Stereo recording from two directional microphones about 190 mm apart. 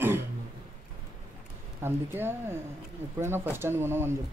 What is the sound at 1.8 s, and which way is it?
Speech, 10° right (ahead or behind).